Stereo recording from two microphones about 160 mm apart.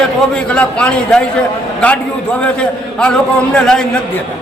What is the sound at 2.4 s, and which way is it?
A man's voice, 5° left (ahead or behind).